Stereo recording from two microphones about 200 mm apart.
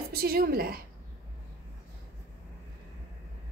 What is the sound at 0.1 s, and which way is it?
Speech, 50° right (ahead or behind).